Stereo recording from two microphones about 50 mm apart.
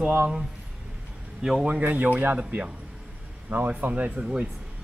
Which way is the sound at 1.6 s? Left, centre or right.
Right.